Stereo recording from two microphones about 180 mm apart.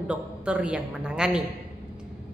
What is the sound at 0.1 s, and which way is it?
A woman's voice, 5° right (ahead or behind).